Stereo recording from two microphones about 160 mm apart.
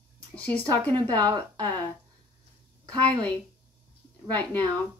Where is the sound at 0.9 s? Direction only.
25° right (ahead or behind).